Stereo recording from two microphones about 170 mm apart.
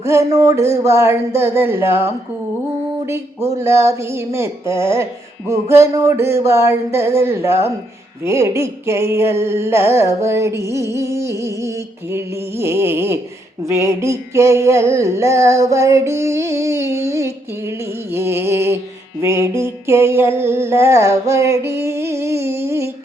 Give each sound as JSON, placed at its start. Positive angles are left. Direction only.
{"t": 0.0, "sound": "music", "side_deg": -15}
{"t": 3.6, "sound": "music", "side_deg": -15}